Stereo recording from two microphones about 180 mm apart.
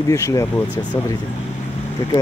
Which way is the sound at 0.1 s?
15° left (ahead or behind).